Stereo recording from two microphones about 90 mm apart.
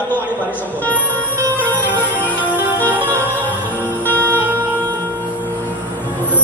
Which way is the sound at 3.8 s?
25° left (ahead or behind).